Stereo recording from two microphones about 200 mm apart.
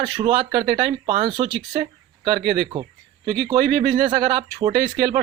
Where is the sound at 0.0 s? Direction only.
25° right (ahead or behind).